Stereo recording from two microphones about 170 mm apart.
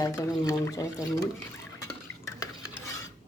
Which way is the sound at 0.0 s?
20° left (ahead or behind).